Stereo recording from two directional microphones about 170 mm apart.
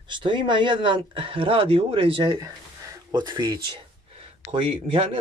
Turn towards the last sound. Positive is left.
turn(degrees=-30)  # may be behind; listen again after turning